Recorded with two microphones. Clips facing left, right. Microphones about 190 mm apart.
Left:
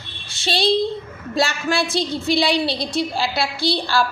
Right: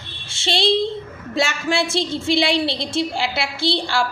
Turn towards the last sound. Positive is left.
turn(degrees=-25)  # may be behind; listen again after turning